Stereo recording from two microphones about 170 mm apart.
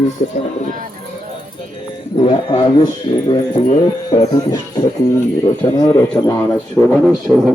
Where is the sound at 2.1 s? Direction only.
30° left (ahead or behind).